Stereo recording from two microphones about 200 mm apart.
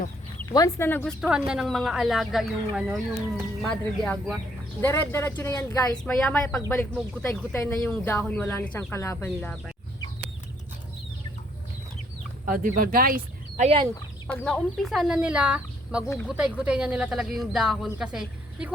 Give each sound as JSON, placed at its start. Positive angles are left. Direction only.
{"t": 0.5, "sound": "speech", "side_deg": 15}
{"t": 1.2, "sound": "speech", "side_deg": -5}
{"t": 5.9, "sound": "speech", "side_deg": 5}
{"t": 12.5, "sound": "speech", "side_deg": -45}
{"t": 14.3, "sound": "a woman's voice", "side_deg": 5}